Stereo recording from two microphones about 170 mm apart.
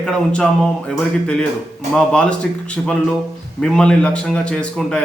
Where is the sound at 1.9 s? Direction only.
5° left (ahead or behind).